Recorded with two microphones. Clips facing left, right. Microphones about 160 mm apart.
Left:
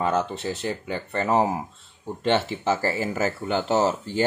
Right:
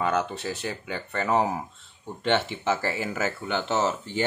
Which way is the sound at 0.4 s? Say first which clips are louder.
Left 3 dB; 25° left (ahead or behind).